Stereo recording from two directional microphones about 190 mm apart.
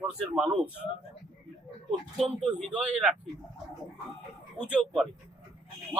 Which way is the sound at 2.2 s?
5° right (ahead or behind).